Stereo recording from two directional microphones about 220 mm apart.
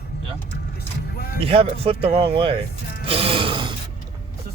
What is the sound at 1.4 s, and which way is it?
Speech, 25° right (ahead or behind).